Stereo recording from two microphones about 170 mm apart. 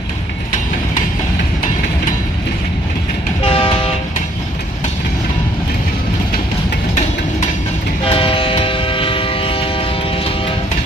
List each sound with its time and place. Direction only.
3.4 s train: 35° left (ahead or behind)
8.0 s train: 30° left (ahead or behind)